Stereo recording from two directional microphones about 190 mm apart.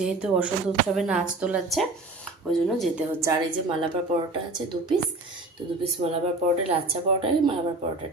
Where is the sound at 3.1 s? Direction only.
15° right (ahead or behind).